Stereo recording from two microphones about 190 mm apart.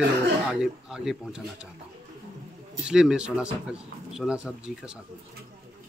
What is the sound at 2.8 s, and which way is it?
A man's voice, 5° right (ahead or behind).